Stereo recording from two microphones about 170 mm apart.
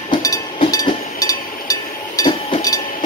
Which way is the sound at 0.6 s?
25° left (ahead or behind).